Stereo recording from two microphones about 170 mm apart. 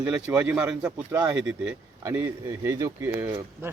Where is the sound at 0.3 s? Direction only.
10° right (ahead or behind).